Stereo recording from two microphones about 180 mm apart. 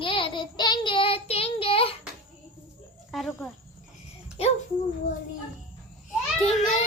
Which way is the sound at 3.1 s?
Centre (ahead or behind).